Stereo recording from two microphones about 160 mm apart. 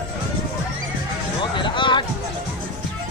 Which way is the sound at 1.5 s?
30° left (ahead or behind).